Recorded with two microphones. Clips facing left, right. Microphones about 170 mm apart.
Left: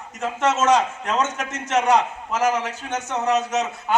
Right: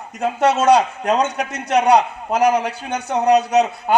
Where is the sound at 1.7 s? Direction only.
35° right (ahead or behind).